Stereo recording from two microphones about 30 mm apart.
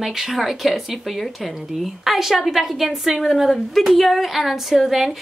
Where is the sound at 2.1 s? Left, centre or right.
Centre.